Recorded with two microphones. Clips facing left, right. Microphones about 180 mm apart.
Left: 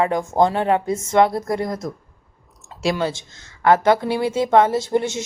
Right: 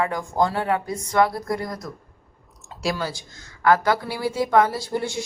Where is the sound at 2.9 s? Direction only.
25° left (ahead or behind).